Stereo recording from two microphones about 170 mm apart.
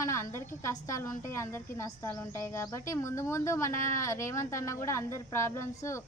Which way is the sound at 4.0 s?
20° left (ahead or behind).